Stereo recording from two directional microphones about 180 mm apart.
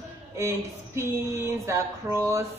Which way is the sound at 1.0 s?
15° right (ahead or behind).